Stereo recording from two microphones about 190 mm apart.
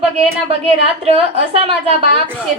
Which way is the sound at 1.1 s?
30° right (ahead or behind).